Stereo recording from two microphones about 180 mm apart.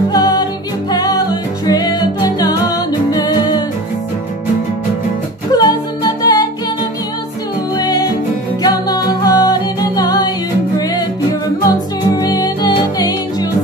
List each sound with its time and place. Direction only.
0.1 s music: 20° left (ahead or behind)
5.5 s music: 20° left (ahead or behind)
7.7 s music: 20° left (ahead or behind)
11.6 s music: 20° left (ahead or behind)